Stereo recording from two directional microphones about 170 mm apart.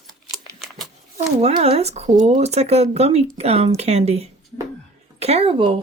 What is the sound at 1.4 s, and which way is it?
Speech, 35° right (ahead or behind).